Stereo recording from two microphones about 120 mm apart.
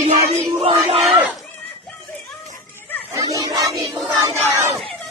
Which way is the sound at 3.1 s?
30° right (ahead or behind).